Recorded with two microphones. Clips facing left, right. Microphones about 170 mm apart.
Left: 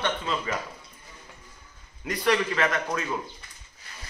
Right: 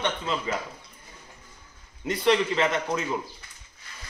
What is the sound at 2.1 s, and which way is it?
A man's voice, 25° right (ahead or behind).